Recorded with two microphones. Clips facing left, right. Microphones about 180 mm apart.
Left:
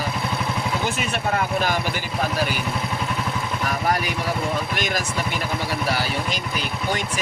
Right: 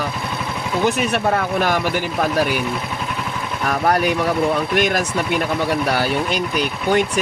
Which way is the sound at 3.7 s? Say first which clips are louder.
Right 7 dB; 60° right (ahead or behind).